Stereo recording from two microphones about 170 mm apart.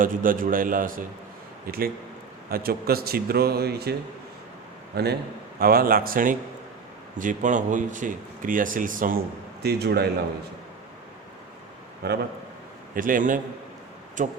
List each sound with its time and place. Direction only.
0.0 s a man's voice: 55° right (ahead or behind); by 3.9 s 70° right (ahead or behind)
4.9 s a man's voice: 70° right (ahead or behind); by 9.1 s 55° right (ahead or behind)
9.6 s speech: 70° right (ahead or behind)
12.0 s speech: 70° right (ahead or behind)
12.9 s speech: 55° right (ahead or behind)